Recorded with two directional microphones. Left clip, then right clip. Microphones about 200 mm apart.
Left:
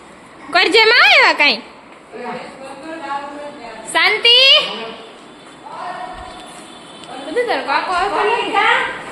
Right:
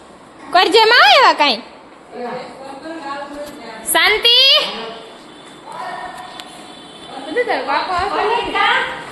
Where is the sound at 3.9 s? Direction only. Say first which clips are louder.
Even; 10° right (ahead or behind).